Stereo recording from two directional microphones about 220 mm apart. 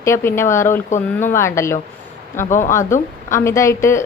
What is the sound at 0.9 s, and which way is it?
Speech, 35° left (ahead or behind).